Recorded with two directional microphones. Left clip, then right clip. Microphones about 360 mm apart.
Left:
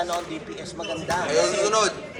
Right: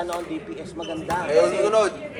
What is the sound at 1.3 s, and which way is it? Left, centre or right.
Speech, right.